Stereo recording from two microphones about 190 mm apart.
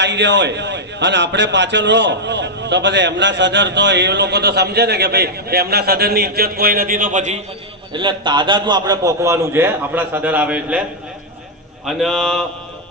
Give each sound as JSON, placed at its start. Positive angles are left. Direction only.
{"t": 0.0, "sound": "a man's voice", "side_deg": -70}
{"t": 7.9, "sound": "a man's voice", "side_deg": -25}
{"t": 11.9, "sound": "a man's voice", "side_deg": 0}